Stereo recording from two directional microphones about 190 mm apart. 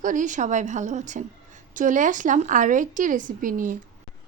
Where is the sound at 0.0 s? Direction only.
40° right (ahead or behind).